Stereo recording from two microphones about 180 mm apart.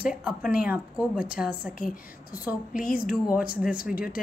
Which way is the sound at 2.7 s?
50° left (ahead or behind).